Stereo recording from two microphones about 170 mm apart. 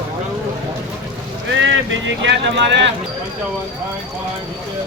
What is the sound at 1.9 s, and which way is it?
Speech, 90° right.